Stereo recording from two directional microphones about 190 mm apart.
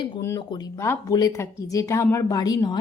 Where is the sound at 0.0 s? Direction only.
20° left (ahead or behind).